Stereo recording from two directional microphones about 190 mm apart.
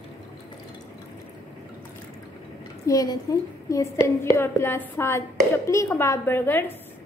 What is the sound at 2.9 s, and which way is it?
A woman's voice, 20° left (ahead or behind).